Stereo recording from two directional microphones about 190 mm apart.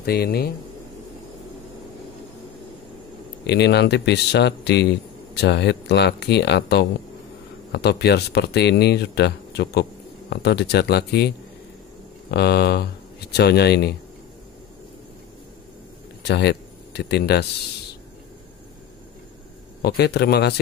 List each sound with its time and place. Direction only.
0.0 s speech: 55° left (ahead or behind)
3.4 s speech: 60° left (ahead or behind)
16.2 s speech: 65° left (ahead or behind)
19.8 s speech: 55° left (ahead or behind)